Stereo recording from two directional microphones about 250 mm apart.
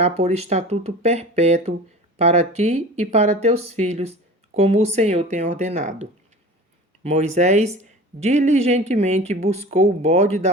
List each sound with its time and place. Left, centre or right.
0.0 s speech: right